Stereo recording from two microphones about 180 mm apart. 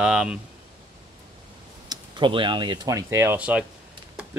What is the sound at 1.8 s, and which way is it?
Speech, 25° right (ahead or behind).